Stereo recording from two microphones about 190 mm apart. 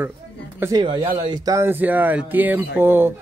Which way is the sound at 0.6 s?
20° right (ahead or behind).